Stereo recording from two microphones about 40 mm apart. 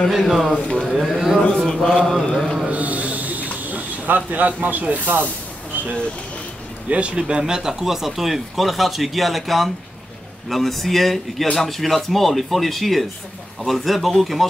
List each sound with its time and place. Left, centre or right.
0.1 s speech: centre
1.5 s mantra: centre
2.7 s snake: right
6.9 s speech: right; by 14.4 s centre